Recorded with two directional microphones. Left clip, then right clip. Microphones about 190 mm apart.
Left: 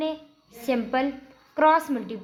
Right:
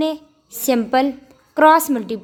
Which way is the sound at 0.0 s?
50° right (ahead or behind).